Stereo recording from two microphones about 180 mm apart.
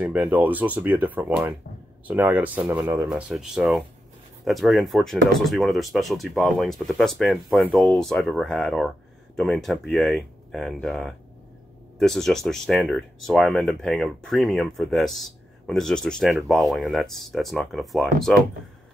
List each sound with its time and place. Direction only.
0.0 s speech: 10° right (ahead or behind)